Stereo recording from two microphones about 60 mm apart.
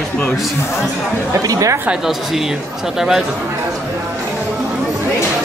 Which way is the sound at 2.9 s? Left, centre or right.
Centre.